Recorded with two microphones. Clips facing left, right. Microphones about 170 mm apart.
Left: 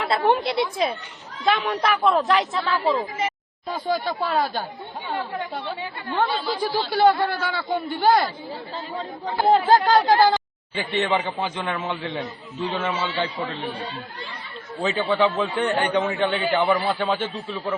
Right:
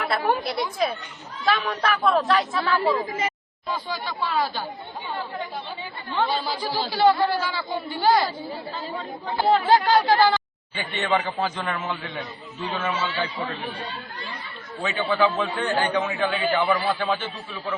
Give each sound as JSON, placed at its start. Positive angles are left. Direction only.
{"t": 0.0, "sound": "a man's voice", "side_deg": 25}
{"t": 3.7, "sound": "speech", "side_deg": 50}
{"t": 6.1, "sound": "speech", "side_deg": 50}
{"t": 9.5, "sound": "speech", "side_deg": 45}
{"t": 10.8, "sound": "a man's voice", "side_deg": 25}
{"t": 14.8, "sound": "a man's voice", "side_deg": 30}